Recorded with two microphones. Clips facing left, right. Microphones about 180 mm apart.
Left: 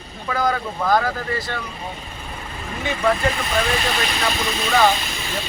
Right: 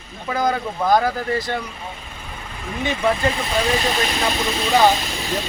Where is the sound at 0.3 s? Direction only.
20° right (ahead or behind).